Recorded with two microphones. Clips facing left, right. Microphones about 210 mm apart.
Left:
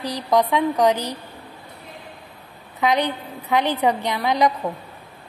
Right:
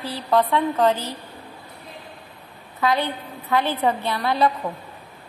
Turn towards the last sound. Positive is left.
turn(degrees=15)  # may be behind; listen again after turning